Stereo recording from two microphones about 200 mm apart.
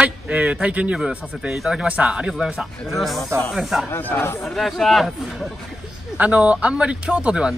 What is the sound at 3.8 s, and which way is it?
Speech, 10° left (ahead or behind).